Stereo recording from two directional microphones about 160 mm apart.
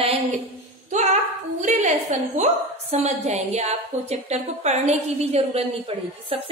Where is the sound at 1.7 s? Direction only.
50° right (ahead or behind).